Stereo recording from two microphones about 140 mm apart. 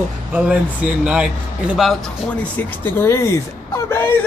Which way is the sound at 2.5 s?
15° left (ahead or behind).